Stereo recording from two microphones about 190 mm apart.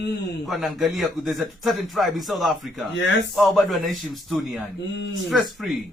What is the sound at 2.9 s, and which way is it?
Speech, 70° left (ahead or behind).